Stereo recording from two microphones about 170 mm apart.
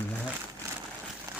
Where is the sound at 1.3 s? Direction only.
20° right (ahead or behind).